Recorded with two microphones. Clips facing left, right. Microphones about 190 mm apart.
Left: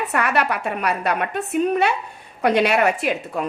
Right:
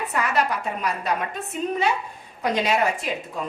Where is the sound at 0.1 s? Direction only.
65° left (ahead or behind).